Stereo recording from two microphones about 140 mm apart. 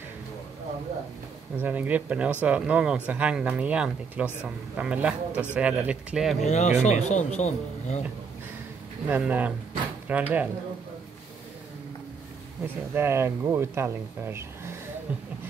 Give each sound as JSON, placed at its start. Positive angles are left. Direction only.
{"t": 1.6, "sound": "speech", "side_deg": -10}
{"t": 6.4, "sound": "speech", "side_deg": 55}
{"t": 9.1, "sound": "speech", "side_deg": -10}
{"t": 12.6, "sound": "speech", "side_deg": -15}